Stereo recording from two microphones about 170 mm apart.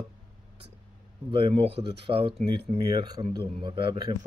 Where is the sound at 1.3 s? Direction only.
35° right (ahead or behind).